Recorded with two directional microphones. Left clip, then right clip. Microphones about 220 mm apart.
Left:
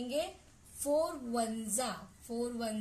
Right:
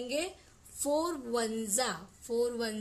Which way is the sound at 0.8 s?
40° right (ahead or behind).